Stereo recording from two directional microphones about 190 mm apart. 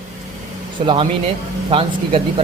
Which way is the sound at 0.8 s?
35° right (ahead or behind).